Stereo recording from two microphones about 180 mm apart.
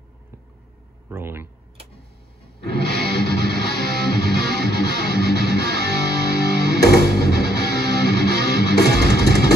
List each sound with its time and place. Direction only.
1.0 s speech: 10° right (ahead or behind)
3.1 s music: 65° left (ahead or behind)